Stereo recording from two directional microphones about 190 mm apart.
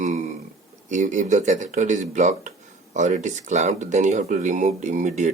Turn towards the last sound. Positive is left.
turn(degrees=-40)  # may be behind; listen again after turning